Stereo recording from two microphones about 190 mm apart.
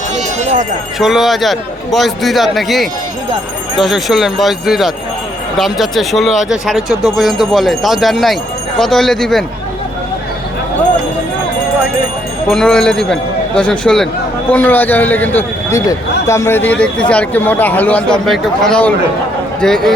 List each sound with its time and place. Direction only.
0.3 s a sound: 40° right (ahead or behind)
0.9 s speech: centre (ahead or behind)
12.5 s a man's voice: centre (ahead or behind)